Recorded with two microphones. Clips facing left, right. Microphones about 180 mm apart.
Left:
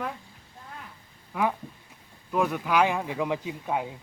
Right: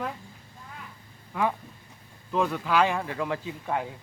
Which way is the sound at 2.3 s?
10° left (ahead or behind).